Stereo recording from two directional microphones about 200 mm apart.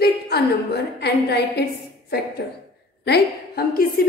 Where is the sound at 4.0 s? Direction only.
50° left (ahead or behind).